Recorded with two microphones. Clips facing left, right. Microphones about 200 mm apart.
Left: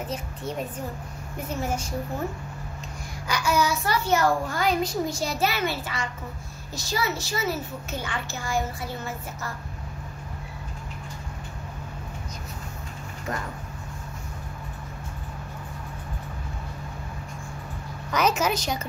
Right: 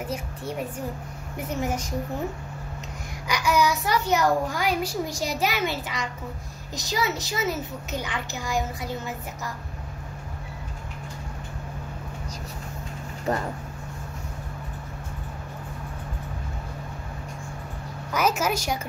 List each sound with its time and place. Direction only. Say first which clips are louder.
0.1 s a child's voice: even; 10° right (ahead or behind)
3.3 s a child's voice: right 1 dB; 15° right (ahead or behind)
13.3 s speech: right 6 dB; 35° right (ahead or behind)
18.1 s a child's voice: left 1 dB; 5° right (ahead or behind)